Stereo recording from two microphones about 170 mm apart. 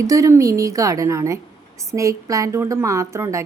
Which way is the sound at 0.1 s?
20° right (ahead or behind).